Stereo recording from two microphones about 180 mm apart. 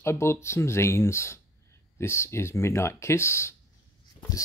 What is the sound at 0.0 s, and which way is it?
Speech, 15° left (ahead or behind).